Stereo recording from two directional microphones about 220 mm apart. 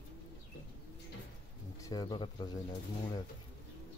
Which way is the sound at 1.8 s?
15° left (ahead or behind).